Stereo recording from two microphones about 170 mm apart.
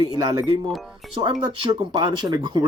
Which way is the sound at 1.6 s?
30° right (ahead or behind).